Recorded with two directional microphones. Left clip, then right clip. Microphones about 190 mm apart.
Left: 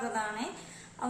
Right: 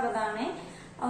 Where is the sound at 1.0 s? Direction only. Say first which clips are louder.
Right 4 dB; 30° left (ahead or behind).